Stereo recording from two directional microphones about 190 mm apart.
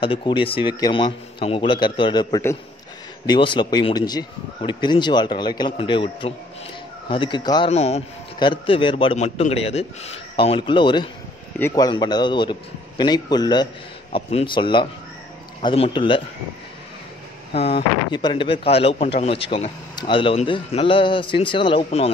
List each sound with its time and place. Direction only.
0.0 s a man's voice: 25° left (ahead or behind)
17.5 s speech: 30° left (ahead or behind)